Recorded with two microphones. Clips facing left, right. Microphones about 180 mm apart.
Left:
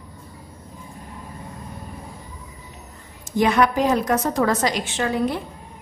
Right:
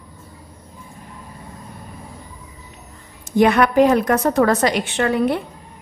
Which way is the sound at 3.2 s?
60° right (ahead or behind).